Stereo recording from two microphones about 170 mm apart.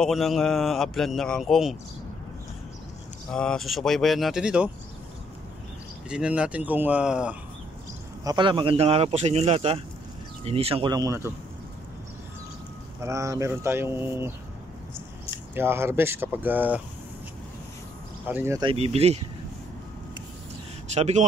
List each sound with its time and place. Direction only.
0.0 s a man's voice: centre (ahead or behind)
3.3 s a man's voice: 5° left (ahead or behind)
6.0 s speech: 5° right (ahead or behind)
8.2 s speech: 25° right (ahead or behind)
10.9 s speech: 20° right (ahead or behind)
13.0 s speech: 15° right (ahead or behind)
15.5 s speech: 15° right (ahead or behind)
18.3 s speech: 15° right (ahead or behind)
18.6 s speech: 35° right (ahead or behind)
20.9 s speech: 40° right (ahead or behind)